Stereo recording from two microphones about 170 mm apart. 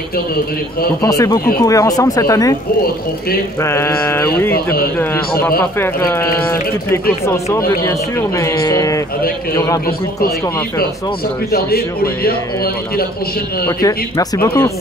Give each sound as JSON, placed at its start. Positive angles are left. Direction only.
{"t": 1.0, "sound": "speech", "side_deg": 20}
{"t": 3.6, "sound": "speech", "side_deg": 15}
{"t": 5.8, "sound": "speech", "side_deg": 15}
{"t": 11.5, "sound": "a man's voice", "side_deg": 65}
{"t": 13.7, "sound": "speech", "side_deg": 20}